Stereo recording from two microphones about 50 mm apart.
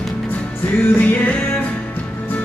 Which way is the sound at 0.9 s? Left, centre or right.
Left.